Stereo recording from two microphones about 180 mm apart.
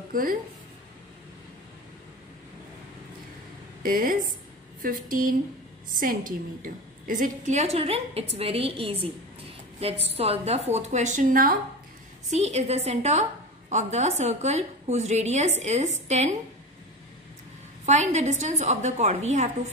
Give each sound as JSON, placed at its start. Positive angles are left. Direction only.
{"t": 0.1, "sound": "speech", "side_deg": -50}
{"t": 3.8, "sound": "a woman's voice", "side_deg": -50}
{"t": 17.8, "sound": "a woman's voice", "side_deg": -40}